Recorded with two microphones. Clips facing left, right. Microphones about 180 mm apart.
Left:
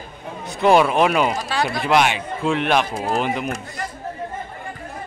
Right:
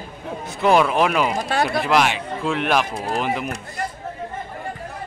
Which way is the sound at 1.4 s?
55° right (ahead or behind).